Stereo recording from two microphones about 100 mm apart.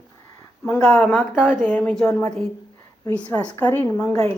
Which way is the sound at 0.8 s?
5° left (ahead or behind).